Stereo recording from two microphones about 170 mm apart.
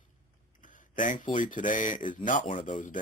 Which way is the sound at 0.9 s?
50° left (ahead or behind).